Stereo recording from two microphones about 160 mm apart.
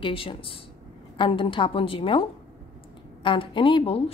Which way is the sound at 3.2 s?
30° left (ahead or behind).